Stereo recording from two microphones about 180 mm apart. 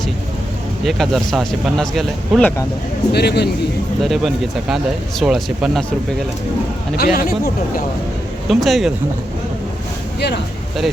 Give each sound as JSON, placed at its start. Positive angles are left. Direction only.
{"t": 0.9, "sound": "speech", "side_deg": 0}
{"t": 3.1, "sound": "a man's voice", "side_deg": 65}
{"t": 4.0, "sound": "speech", "side_deg": 0}
{"t": 6.9, "sound": "speech", "side_deg": 55}
{"t": 8.4, "sound": "speech", "side_deg": 0}